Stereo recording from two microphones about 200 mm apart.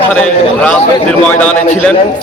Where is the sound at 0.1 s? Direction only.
5° left (ahead or behind).